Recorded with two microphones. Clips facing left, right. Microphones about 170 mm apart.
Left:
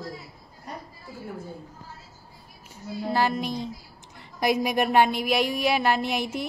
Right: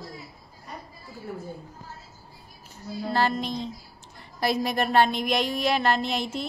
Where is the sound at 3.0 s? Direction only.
10° left (ahead or behind).